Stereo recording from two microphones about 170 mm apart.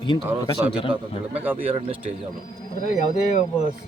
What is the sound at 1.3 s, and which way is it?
Speech, 10° right (ahead or behind).